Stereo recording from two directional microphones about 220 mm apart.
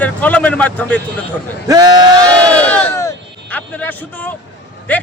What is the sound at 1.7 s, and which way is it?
Speech, 20° right (ahead or behind).